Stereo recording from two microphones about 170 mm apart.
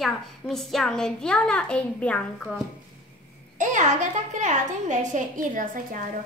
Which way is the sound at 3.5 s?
45° right (ahead or behind).